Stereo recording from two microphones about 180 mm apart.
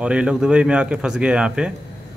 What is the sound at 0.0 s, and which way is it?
Speech, 5° right (ahead or behind).